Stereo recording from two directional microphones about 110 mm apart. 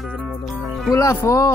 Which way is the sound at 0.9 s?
25° left (ahead or behind).